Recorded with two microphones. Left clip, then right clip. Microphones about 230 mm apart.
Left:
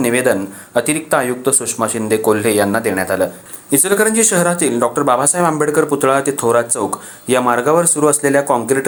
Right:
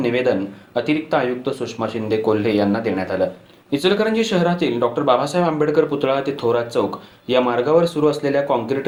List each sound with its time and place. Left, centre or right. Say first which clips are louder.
0.0 s speech: left 4 dB; left